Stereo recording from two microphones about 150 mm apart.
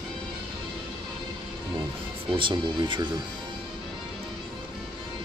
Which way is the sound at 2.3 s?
35° right (ahead or behind).